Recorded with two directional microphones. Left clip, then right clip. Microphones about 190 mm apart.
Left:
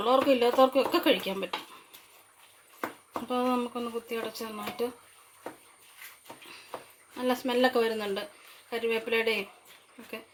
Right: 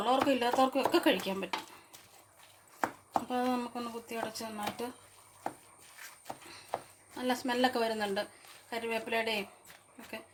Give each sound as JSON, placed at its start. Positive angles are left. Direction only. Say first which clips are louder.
{"t": 0.0, "sound": "speech", "louder": "left 5 dB", "side_deg": 20}
{"t": 3.2, "sound": "speech", "louder": "left 9 dB", "side_deg": 20}
{"t": 7.2, "sound": "speech", "louder": "left 4 dB", "side_deg": 20}